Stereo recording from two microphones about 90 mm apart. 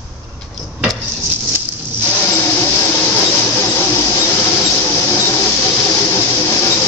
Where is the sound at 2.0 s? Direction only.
25° left (ahead or behind).